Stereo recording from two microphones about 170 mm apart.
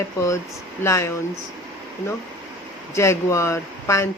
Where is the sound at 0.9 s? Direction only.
15° left (ahead or behind).